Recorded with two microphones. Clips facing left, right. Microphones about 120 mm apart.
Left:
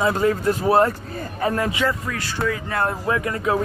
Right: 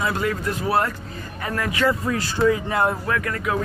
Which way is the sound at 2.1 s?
25° right (ahead or behind).